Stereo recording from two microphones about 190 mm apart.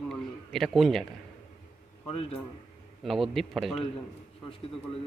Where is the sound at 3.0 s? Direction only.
Centre (ahead or behind).